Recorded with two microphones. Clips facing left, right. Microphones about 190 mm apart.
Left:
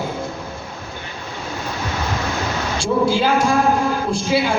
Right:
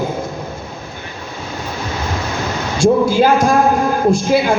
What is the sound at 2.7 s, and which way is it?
A man's voice, 45° right (ahead or behind).